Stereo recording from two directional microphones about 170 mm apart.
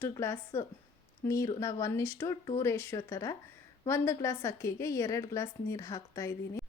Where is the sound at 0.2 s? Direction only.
15° left (ahead or behind).